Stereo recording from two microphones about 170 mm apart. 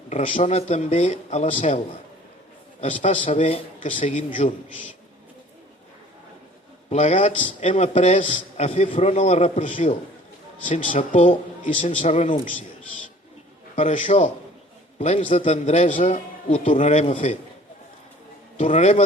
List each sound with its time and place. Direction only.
0.1 s a man's voice: 50° left (ahead or behind)
2.8 s a man's voice: 45° left (ahead or behind)
6.9 s a man's voice: 40° left (ahead or behind)
13.7 s a man's voice: 45° left (ahead or behind)
18.5 s a man's voice: 40° left (ahead or behind)